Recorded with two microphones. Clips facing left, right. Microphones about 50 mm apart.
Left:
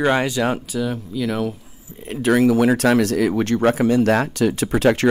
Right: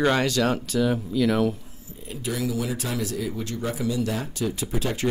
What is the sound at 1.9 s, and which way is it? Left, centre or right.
Speech, left.